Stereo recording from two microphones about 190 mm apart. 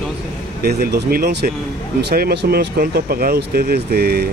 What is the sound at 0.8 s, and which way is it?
Speech, 55° right (ahead or behind).